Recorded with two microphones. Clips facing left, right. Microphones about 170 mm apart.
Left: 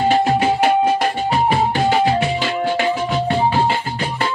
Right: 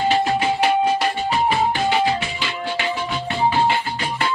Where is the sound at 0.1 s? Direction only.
50° left (ahead or behind).